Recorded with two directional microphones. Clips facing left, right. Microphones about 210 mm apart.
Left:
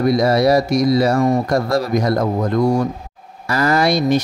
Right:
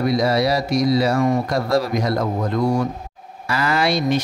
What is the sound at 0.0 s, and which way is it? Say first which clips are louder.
Speech: left 4 dB; 45° left (ahead or behind).